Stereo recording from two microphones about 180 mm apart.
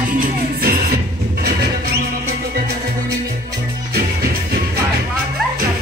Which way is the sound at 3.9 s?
60° right (ahead or behind).